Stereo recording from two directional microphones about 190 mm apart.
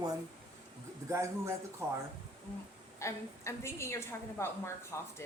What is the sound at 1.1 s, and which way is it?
Speech, 15° right (ahead or behind).